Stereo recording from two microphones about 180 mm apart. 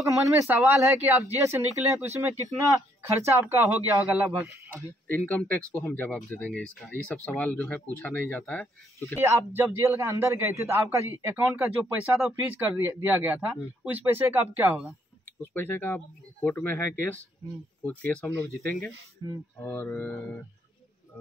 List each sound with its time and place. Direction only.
0.0 s a man's voice: 15° right (ahead or behind)
5.1 s speech: 10° left (ahead or behind)
9.2 s a man's voice: 15° right (ahead or behind)
15.4 s speech: 10° left (ahead or behind)
19.2 s a man's voice: 15° right (ahead or behind)
19.6 s speech: 10° left (ahead or behind)